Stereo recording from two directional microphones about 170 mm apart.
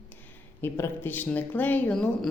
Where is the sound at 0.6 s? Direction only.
15° left (ahead or behind).